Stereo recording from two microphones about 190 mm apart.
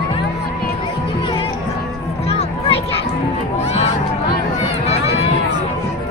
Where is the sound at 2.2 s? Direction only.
30° left (ahead or behind).